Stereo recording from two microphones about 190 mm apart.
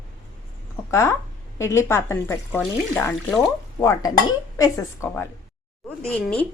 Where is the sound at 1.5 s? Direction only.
15° left (ahead or behind).